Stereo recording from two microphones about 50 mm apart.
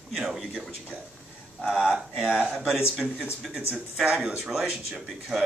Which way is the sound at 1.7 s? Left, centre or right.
Centre.